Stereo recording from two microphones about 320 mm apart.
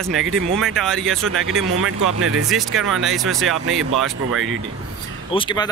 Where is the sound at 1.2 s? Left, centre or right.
Right.